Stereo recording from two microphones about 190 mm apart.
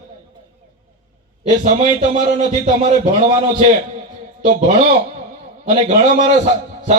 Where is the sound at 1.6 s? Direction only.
40° right (ahead or behind).